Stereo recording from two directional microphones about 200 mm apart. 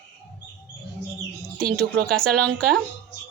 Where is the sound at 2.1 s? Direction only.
Centre (ahead or behind).